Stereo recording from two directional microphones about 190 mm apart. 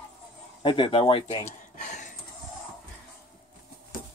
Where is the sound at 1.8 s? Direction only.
40° left (ahead or behind).